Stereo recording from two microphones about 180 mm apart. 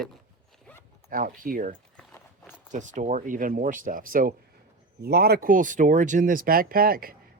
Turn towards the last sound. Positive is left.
turn(degrees=-55)  # may be behind; listen again after turning